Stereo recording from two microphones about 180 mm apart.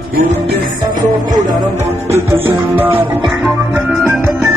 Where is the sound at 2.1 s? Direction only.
15° right (ahead or behind).